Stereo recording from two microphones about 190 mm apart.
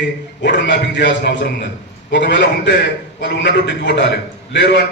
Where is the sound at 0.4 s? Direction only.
70° left (ahead or behind).